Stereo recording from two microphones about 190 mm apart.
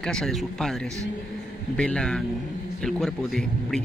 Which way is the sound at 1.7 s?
5° left (ahead or behind).